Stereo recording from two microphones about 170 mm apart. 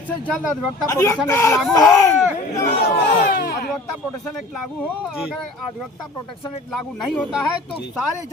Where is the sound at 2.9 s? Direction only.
70° left (ahead or behind).